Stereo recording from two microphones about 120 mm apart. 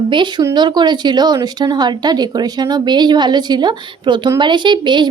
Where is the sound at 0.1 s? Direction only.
40° right (ahead or behind).